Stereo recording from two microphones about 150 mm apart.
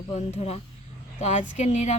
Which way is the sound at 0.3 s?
45° left (ahead or behind).